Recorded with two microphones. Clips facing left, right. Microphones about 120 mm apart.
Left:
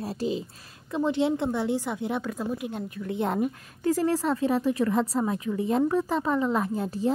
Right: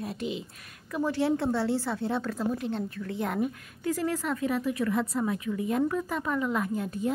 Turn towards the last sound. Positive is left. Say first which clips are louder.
# left 3 dB
turn(degrees=30)  # may be behind; listen again after turning